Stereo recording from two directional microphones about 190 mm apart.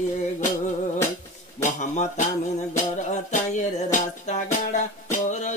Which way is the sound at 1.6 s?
40° left (ahead or behind).